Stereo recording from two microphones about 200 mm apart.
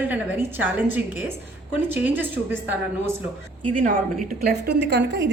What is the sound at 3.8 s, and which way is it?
A woman's voice, 40° right (ahead or behind).